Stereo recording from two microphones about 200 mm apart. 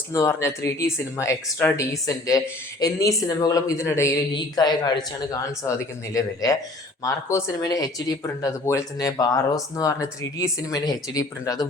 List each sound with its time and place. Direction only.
0.1 s speech: 15° left (ahead or behind)
6.1 s speech: 20° left (ahead or behind)